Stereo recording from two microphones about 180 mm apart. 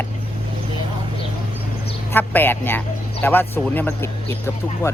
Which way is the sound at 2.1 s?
10° left (ahead or behind).